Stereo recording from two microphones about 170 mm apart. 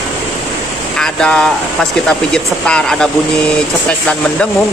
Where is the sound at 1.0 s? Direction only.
5° left (ahead or behind).